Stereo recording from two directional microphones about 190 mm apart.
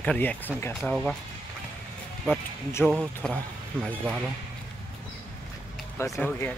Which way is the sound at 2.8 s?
5° left (ahead or behind).